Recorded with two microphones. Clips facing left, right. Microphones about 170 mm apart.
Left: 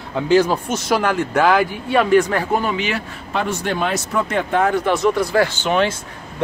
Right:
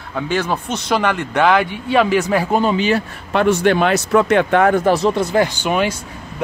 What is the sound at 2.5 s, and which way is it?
Speech, 30° right (ahead or behind).